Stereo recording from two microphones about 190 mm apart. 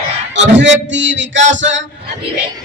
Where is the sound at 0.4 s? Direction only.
70° right (ahead or behind).